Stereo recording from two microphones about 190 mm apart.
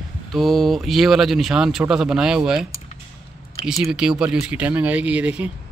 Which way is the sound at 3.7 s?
Centre (ahead or behind).